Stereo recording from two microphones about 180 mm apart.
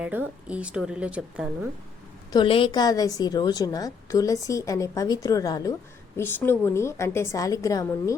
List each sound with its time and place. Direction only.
0.0 s a woman's voice: 10° right (ahead or behind)
2.3 s a woman's voice: 30° left (ahead or behind)